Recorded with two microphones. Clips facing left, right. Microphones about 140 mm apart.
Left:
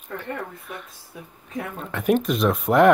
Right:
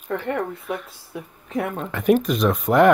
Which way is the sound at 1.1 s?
65° right (ahead or behind).